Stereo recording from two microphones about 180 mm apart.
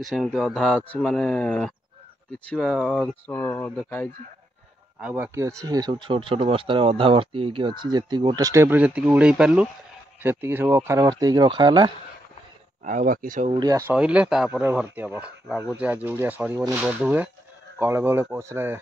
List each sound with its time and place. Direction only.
0.0 s speech: centre (ahead or behind)
5.0 s speech: 10° right (ahead or behind); by 11.9 s 25° right (ahead or behind)
12.8 s speech: 45° right (ahead or behind)
13.5 s speech: 20° right (ahead or behind)
13.9 s speech: 5° right (ahead or behind)